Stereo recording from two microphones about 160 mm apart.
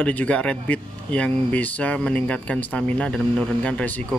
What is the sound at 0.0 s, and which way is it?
Speech, 10° left (ahead or behind).